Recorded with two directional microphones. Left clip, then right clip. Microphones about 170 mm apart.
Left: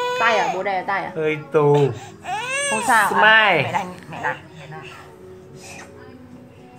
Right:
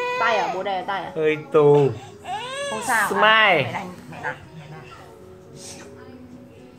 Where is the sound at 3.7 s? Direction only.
45° left (ahead or behind).